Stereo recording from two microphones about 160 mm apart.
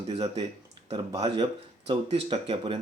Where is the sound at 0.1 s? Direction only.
30° right (ahead or behind).